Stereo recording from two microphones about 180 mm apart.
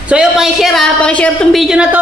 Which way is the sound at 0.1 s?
5° right (ahead or behind).